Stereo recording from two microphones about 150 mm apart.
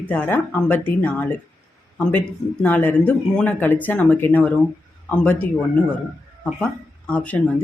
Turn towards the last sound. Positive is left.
turn(degrees=10)  # may be behind; listen again after turning